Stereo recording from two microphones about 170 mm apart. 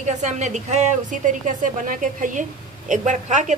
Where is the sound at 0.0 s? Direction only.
45° right (ahead or behind).